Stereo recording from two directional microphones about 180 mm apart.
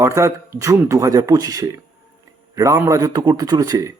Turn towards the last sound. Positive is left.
turn(degrees=-20)  # may be behind; listen again after turning